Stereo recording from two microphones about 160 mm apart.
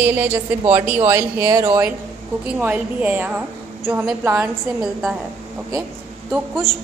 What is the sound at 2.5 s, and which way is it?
Speech, 10° right (ahead or behind).